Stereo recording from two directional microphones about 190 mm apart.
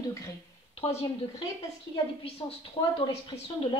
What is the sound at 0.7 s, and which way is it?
Speech, 35° left (ahead or behind).